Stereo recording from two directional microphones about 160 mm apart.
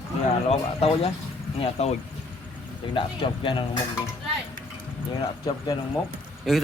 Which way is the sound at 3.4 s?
30° left (ahead or behind).